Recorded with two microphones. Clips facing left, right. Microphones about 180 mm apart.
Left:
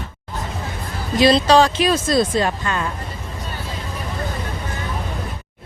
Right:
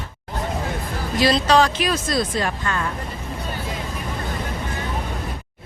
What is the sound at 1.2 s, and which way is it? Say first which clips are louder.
Speech: left 4 dB; 25° left (ahead or behind).